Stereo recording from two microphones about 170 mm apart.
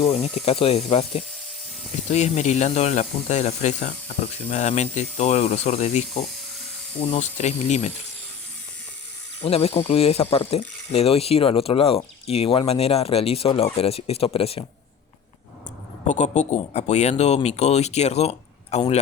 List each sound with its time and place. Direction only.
0.0 s speech: 40° left (ahead or behind)
9.4 s speech: 35° left (ahead or behind)
16.0 s speech: 40° left (ahead or behind)